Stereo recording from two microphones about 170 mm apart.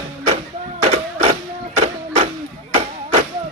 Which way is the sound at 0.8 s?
35° right (ahead or behind).